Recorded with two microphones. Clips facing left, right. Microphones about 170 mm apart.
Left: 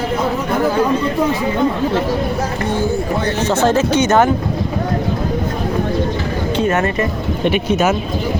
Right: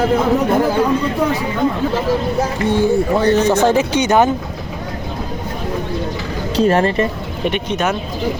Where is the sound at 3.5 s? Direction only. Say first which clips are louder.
Even; 15° right (ahead or behind).